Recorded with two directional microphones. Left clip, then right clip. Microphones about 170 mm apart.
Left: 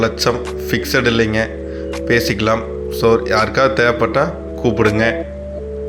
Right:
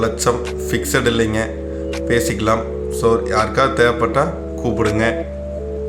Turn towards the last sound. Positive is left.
turn(degrees=20)  # may be behind; listen again after turning